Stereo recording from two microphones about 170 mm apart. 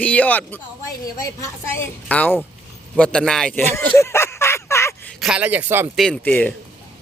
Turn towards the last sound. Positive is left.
turn(degrees=10)  # may be behind; listen again after turning